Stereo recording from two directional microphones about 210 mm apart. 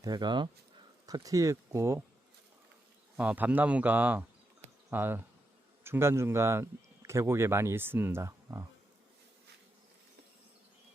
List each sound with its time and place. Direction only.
0.0 s speech: 20° right (ahead or behind)
3.2 s speech: 10° right (ahead or behind)